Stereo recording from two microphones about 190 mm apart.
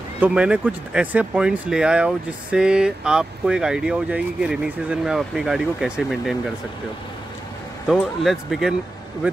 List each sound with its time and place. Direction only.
0.2 s speech: 5° right (ahead or behind)
7.9 s speech: centre (ahead or behind)